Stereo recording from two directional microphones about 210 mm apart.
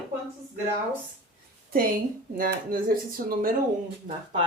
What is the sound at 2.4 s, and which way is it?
Speech, 40° right (ahead or behind).